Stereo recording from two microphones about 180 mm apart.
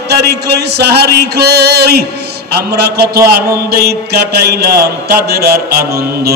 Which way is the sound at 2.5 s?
65° right (ahead or behind).